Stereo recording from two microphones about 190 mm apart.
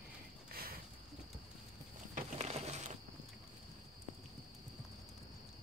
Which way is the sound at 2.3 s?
35° right (ahead or behind).